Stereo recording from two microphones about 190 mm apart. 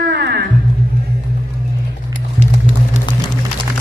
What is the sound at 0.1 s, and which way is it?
Music, 60° right (ahead or behind).